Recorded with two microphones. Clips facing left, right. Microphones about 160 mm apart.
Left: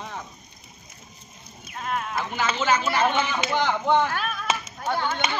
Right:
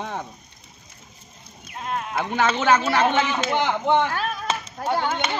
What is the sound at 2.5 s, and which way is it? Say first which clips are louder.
Speech: right 2 dB; 65° right (ahead or behind).